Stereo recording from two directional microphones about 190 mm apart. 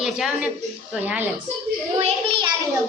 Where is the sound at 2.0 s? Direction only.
30° right (ahead or behind).